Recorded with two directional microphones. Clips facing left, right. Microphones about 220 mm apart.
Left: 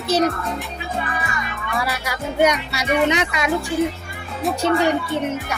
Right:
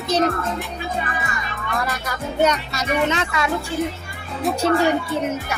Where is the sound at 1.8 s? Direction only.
10° left (ahead or behind).